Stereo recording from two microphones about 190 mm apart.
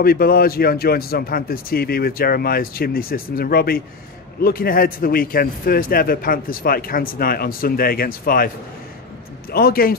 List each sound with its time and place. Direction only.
0.0 s a man's voice: 50° left (ahead or behind)
9.5 s a man's voice: 55° left (ahead or behind)